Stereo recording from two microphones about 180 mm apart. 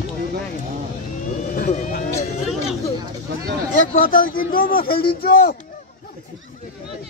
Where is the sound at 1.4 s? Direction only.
40° left (ahead or behind).